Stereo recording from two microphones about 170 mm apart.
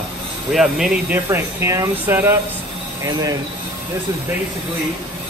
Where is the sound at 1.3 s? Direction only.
20° right (ahead or behind).